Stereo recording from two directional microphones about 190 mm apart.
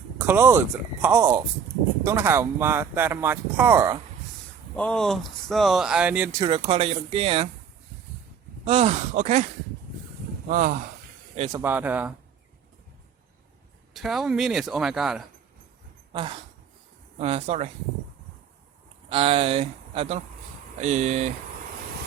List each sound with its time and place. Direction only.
0.2 s speech: 10° right (ahead or behind)
4.8 s speech: 5° left (ahead or behind)
6.4 s speech: 30° right (ahead or behind)
8.6 s speech: 30° right (ahead or behind)
10.5 s speech: 45° right (ahead or behind)
11.5 s speech: 10° right (ahead or behind)
13.9 s speech: centre (ahead or behind)
16.1 s speech: 25° right (ahead or behind)
19.0 s speech: 30° right (ahead or behind)